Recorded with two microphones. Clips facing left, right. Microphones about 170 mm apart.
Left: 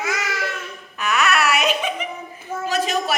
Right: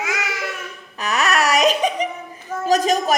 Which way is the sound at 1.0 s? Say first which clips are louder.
Even; 40° right (ahead or behind).